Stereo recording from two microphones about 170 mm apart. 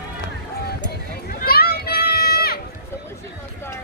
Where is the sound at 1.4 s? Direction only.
65° left (ahead or behind).